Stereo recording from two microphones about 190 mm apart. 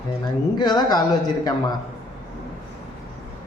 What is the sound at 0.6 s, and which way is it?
Speech, 20° left (ahead or behind).